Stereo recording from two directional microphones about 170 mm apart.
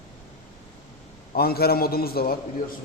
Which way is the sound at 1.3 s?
65° left (ahead or behind).